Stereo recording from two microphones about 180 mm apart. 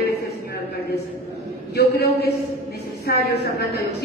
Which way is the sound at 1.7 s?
60° left (ahead or behind).